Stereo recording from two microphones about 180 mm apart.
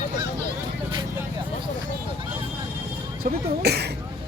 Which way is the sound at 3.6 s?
65° right (ahead or behind).